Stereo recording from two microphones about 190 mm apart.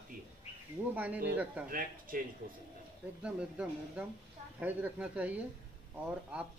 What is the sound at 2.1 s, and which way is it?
Speech, 50° right (ahead or behind).